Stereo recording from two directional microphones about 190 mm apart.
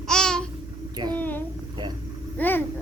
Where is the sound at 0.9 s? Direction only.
20° right (ahead or behind).